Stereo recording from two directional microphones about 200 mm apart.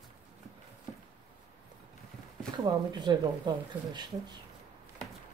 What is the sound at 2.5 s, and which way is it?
Speech, 20° right (ahead or behind).